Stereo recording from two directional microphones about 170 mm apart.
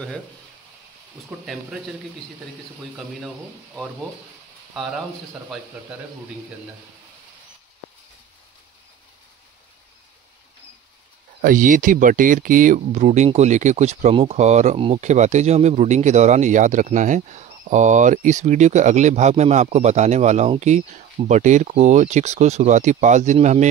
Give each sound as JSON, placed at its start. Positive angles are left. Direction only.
{"t": 1.4, "sound": "speech", "side_deg": 0}
{"t": 11.4, "sound": "speech", "side_deg": -50}